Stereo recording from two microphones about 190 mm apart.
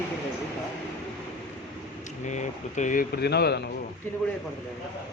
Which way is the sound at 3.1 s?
60° left (ahead or behind).